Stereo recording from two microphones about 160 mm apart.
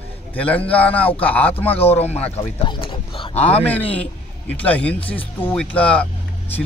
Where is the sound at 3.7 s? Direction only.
10° left (ahead or behind).